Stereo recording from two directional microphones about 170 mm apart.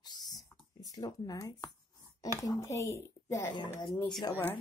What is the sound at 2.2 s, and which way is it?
Speech, 20° left (ahead or behind).